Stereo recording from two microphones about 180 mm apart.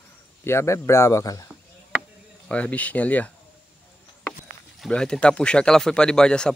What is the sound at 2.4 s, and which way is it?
Speech, 5° left (ahead or behind).